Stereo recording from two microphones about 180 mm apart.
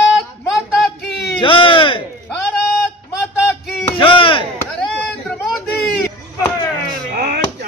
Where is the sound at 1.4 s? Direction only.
30° left (ahead or behind).